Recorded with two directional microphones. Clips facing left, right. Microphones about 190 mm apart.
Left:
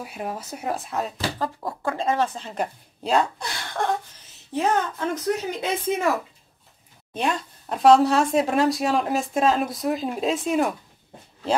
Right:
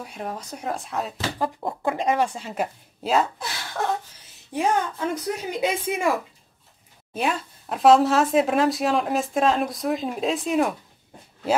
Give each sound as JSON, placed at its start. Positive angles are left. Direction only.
{"t": 0.0, "sound": "speech", "side_deg": 5}
{"t": 1.4, "sound": "speech", "side_deg": -20}
{"t": 7.2, "sound": "speech", "side_deg": -5}